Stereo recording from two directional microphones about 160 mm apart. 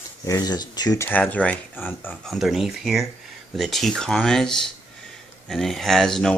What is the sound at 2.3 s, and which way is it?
Speech, centre (ahead or behind).